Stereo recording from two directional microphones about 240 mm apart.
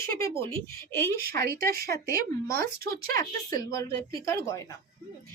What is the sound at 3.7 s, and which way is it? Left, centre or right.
Speech, centre.